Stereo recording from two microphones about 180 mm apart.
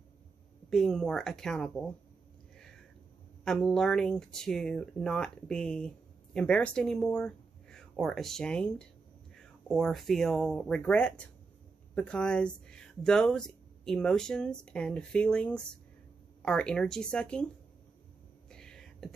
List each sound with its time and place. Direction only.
0.7 s speech: centre (ahead or behind)
3.4 s speech: 5° left (ahead or behind)
18.5 s a sound: 5° left (ahead or behind)